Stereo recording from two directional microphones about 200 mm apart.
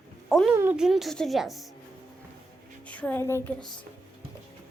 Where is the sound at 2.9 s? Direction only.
5° left (ahead or behind).